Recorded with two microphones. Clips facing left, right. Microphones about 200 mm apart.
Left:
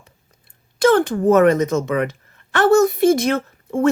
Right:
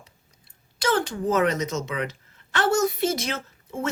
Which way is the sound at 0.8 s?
55° left (ahead or behind).